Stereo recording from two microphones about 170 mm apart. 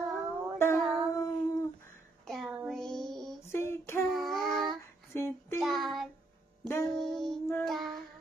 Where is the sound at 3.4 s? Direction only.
15° left (ahead or behind).